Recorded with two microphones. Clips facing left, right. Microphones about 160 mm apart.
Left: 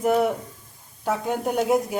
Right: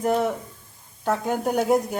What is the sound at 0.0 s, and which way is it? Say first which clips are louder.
Speech: left 2 dB; 5° left (ahead or behind).